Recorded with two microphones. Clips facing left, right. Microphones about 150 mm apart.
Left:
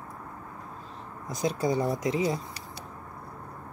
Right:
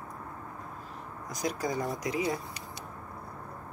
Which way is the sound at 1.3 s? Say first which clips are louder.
Left 5 dB; 25° left (ahead or behind).